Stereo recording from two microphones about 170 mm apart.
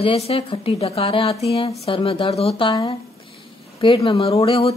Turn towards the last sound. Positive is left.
turn(degrees=35)  # may be behind; listen again after turning